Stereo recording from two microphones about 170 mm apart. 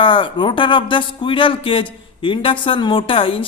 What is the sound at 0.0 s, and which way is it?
Speech, 30° left (ahead or behind).